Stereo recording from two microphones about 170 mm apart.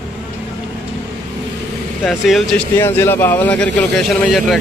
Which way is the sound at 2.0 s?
Centre (ahead or behind).